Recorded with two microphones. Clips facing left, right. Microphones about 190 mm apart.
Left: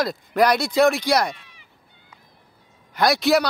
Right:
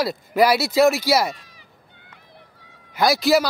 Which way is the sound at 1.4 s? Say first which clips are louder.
Right 2 dB; 40° right (ahead or behind).